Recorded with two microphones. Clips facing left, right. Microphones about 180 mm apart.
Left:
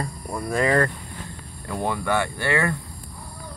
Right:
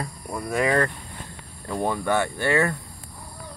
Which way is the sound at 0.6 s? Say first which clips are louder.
Left 1 dB; 15° right (ahead or behind).